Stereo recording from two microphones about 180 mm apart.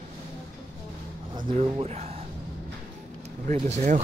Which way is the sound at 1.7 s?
35° right (ahead or behind).